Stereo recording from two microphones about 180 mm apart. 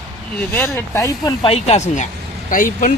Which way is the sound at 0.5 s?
15° left (ahead or behind).